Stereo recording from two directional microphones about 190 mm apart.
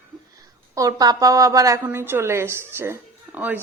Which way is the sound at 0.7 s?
20° right (ahead or behind).